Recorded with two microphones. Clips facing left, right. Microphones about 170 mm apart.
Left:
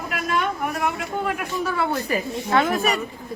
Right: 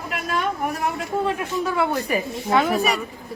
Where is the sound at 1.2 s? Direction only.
20° right (ahead or behind).